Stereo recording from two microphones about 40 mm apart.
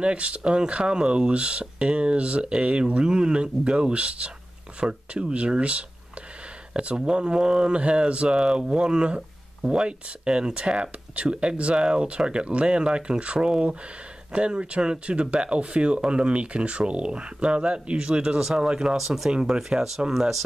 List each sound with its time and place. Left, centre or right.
0.0 s speech: right
18.9 s speech: centre
19.3 s speech: centre